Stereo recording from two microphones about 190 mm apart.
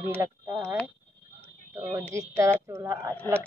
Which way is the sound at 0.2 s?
15° right (ahead or behind).